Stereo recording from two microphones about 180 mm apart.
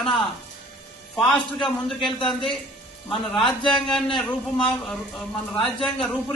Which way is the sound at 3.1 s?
30° left (ahead or behind).